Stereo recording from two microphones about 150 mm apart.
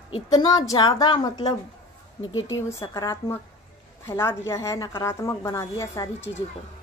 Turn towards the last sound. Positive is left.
turn(degrees=20)  # may be behind; listen again after turning